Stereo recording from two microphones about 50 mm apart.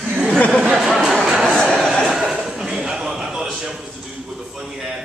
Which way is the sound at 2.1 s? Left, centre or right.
Centre.